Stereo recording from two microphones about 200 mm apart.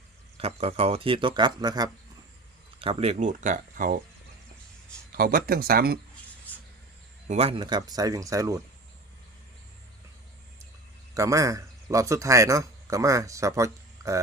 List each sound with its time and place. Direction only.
0.3 s speech: 30° right (ahead or behind)
5.1 s speech: 45° right (ahead or behind)
7.3 s speech: 30° right (ahead or behind); by 8.6 s 15° right (ahead or behind)
11.1 s a man's voice: 15° right (ahead or behind)